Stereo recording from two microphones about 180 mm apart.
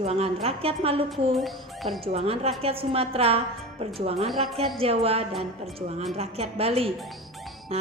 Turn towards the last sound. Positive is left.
turn(degrees=-35)  # may be behind; listen again after turning